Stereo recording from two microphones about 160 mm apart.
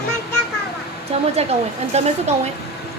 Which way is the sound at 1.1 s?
40° right (ahead or behind).